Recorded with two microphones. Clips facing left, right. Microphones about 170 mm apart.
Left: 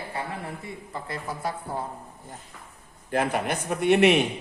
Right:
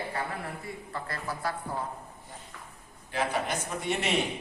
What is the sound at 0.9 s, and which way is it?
Speech, 20° left (ahead or behind).